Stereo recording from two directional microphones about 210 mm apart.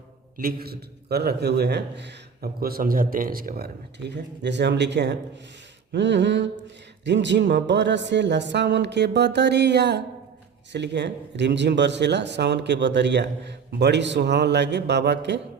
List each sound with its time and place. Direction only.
0.3 s a man's voice: 45° right (ahead or behind)
4.1 s a man's voice: 55° right (ahead or behind)